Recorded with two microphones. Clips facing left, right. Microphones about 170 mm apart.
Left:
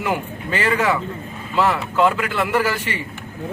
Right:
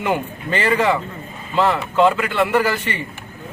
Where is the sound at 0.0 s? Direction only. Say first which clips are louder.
Right 2 dB; 5° left (ahead or behind).